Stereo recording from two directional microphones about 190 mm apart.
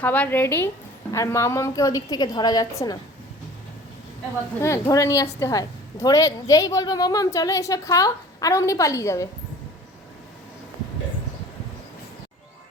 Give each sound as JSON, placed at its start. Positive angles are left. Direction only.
{"t": 0.0, "sound": "a woman's voice", "side_deg": 10}
{"t": 4.6, "sound": "a woman's voice", "side_deg": 15}